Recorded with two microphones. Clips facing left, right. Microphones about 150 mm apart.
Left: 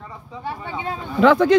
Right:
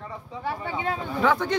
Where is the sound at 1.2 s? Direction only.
90° left.